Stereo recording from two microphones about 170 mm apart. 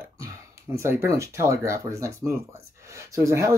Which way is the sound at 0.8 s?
15° right (ahead or behind).